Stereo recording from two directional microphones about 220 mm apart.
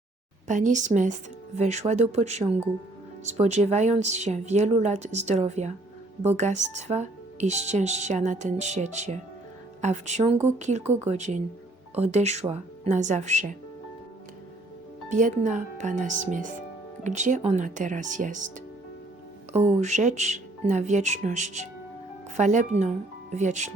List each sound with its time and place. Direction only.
0.4 s speech: 35° right (ahead or behind)
15.1 s speech: 35° right (ahead or behind)
19.5 s speech: 30° right (ahead or behind)